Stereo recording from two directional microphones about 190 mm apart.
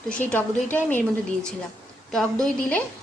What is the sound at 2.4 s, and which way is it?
Speech, 5° left (ahead or behind).